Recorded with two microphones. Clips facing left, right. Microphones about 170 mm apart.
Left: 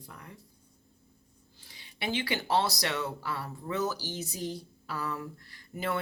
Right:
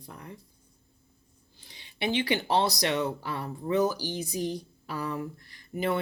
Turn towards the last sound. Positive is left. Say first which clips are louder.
# right 5 dB
turn(degrees=-20)  # may be behind; listen again after turning